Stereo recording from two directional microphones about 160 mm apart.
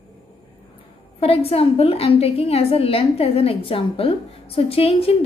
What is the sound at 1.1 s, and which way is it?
A woman's voice, 40° left (ahead or behind).